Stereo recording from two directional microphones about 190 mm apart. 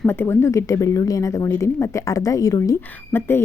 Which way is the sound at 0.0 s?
10° left (ahead or behind).